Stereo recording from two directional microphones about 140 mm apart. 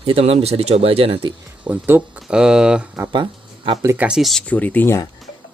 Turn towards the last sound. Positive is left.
turn(degrees=10)  # may be behind; listen again after turning